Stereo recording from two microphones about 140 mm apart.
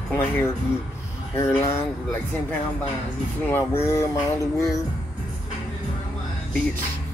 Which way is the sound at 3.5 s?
15° left (ahead or behind).